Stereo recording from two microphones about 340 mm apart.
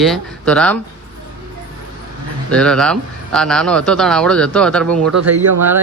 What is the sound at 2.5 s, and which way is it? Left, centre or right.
Speech, centre.